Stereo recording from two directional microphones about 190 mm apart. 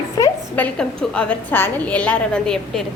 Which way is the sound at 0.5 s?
5° left (ahead or behind).